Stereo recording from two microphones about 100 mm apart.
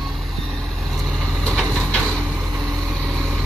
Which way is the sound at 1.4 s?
5° left (ahead or behind).